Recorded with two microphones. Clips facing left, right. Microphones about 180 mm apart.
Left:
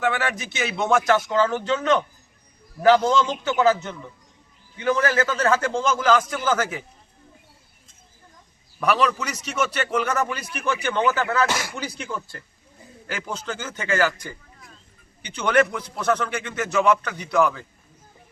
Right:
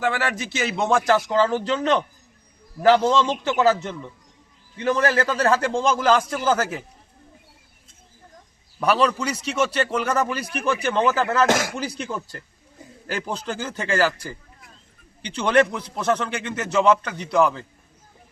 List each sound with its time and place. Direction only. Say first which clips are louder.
0.1 s a man's voice: right 1 dB; 30° right (ahead or behind)
4.8 s a man's voice: right 1 dB; 35° right (ahead or behind)
8.8 s a man's voice: right 2 dB; 30° right (ahead or behind)
11.4 s speech: right 6 dB; 90° right
13.1 s a man's voice: right 3 dB; 35° right (ahead or behind)